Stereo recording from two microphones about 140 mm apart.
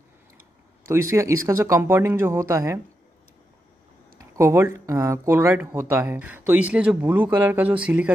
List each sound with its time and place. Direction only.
0.8 s speech: 20° right (ahead or behind)
4.4 s speech: 20° right (ahead or behind)